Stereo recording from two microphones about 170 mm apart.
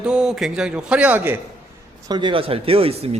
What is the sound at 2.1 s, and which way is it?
Speech, 30° right (ahead or behind).